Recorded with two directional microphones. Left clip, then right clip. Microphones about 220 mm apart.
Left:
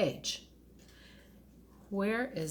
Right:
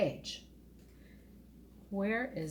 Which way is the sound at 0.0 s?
50° left (ahead or behind).